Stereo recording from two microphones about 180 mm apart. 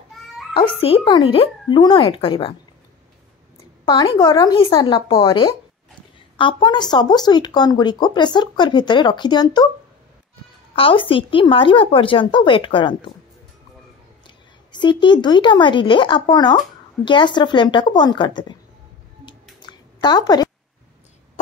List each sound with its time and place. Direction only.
0.6 s speech: 30° left (ahead or behind)
3.8 s speech: 25° left (ahead or behind)
10.8 s speech: 30° left (ahead or behind)
14.2 s a woman's voice: 25° left (ahead or behind)
19.6 s a sound: 25° left (ahead or behind)